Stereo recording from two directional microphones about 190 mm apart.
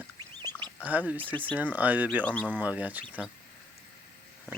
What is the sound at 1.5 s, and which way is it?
Speech, 10° right (ahead or behind).